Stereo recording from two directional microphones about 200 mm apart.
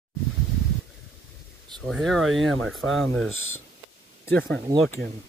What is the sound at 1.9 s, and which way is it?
Speech, centre (ahead or behind).